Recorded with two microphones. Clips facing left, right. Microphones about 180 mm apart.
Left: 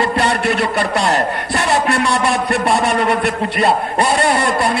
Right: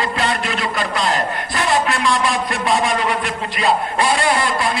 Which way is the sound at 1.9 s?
70° left (ahead or behind).